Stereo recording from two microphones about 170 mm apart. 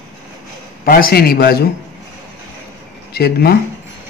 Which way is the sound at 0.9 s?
60° left (ahead or behind).